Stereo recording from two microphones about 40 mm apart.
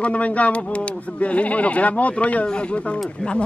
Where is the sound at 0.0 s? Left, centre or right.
Left.